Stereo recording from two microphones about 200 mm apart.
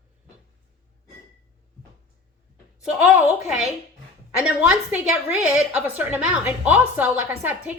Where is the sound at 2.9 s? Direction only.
5° right (ahead or behind).